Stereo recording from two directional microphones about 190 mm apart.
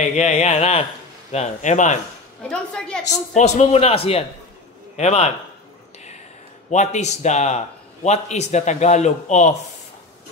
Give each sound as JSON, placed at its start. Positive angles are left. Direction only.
{"t": 0.1, "sound": "a man's voice", "side_deg": 35}
{"t": 2.4, "sound": "a woman's voice", "side_deg": 5}
{"t": 3.1, "sound": "a man's voice", "side_deg": 40}
{"t": 6.7, "sound": "a man's voice", "side_deg": 40}